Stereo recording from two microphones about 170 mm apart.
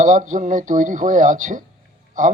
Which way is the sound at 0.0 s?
45° right (ahead or behind).